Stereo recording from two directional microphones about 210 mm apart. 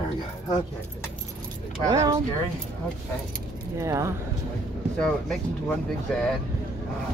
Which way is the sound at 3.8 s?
15° right (ahead or behind).